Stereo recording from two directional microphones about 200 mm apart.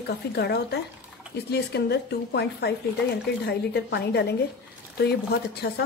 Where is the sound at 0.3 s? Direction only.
55° left (ahead or behind).